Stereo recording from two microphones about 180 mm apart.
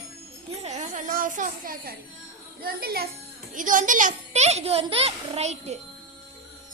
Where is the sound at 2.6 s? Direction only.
60° right (ahead or behind).